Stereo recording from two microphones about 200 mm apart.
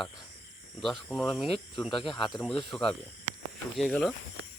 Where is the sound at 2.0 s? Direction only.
25° left (ahead or behind).